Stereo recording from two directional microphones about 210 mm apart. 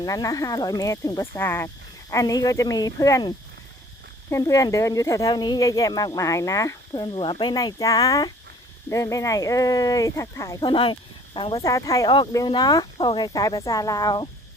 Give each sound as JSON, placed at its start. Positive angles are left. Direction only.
{"t": 0.0, "sound": "speech", "side_deg": 15}